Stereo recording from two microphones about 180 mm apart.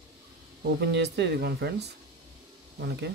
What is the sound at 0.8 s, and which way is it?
Speech, 70° right (ahead or behind).